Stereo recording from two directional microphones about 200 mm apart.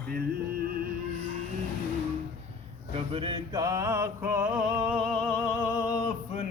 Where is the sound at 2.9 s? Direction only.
30° right (ahead or behind); by 6.0 s 15° left (ahead or behind).